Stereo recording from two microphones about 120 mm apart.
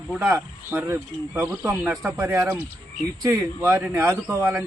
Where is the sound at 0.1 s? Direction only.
5° right (ahead or behind).